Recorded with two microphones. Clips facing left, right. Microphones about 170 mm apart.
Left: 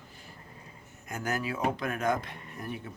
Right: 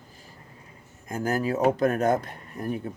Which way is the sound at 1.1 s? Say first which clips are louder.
Right 7 dB; 35° right (ahead or behind).